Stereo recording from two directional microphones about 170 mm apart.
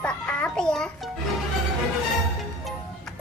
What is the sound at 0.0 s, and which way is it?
Music, 5° left (ahead or behind).